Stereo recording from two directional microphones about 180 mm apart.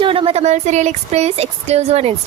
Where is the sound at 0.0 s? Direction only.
30° right (ahead or behind).